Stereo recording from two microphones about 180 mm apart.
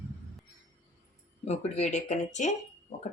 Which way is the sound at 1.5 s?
40° left (ahead or behind).